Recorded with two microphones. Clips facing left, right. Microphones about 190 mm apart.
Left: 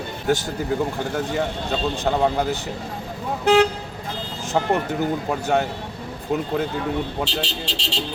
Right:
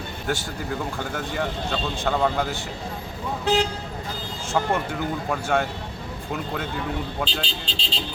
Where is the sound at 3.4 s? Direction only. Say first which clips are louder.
Left 6 dB; 70° left (ahead or behind).